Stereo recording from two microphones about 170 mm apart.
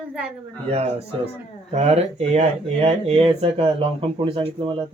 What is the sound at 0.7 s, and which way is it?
Speech, 35° right (ahead or behind).